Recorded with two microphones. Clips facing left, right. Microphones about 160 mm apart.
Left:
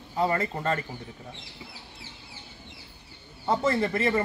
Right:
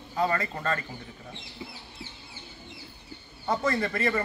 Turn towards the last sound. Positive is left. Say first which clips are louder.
# left 2 dB
turn(degrees=25)  # may be behind; listen again after turning